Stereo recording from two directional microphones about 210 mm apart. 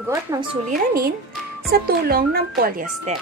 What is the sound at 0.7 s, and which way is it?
A woman's voice, 45° right (ahead or behind).